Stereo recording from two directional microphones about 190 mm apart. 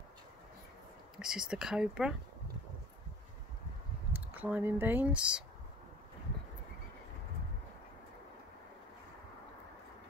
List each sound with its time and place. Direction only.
1.1 s speech: 5° right (ahead or behind)
4.3 s speech: 10° right (ahead or behind)